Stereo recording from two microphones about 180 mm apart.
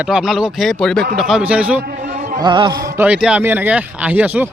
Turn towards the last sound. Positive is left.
turn(degrees=-10)  # may be behind; listen again after turning